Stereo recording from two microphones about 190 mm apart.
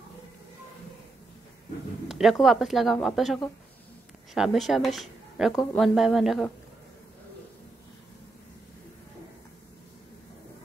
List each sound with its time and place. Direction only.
2.0 s speech: centre (ahead or behind)